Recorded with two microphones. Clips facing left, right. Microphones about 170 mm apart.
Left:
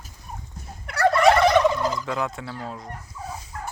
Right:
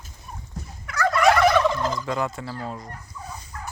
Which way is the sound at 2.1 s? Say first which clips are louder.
Right 1 dB; centre (ahead or behind).